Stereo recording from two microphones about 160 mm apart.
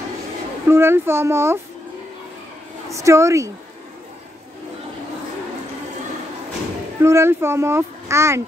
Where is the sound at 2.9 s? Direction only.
20° right (ahead or behind).